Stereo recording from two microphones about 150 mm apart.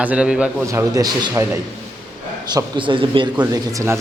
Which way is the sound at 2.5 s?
30° right (ahead or behind).